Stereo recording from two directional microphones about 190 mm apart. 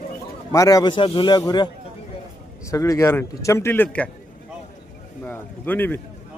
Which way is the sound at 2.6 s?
15° left (ahead or behind).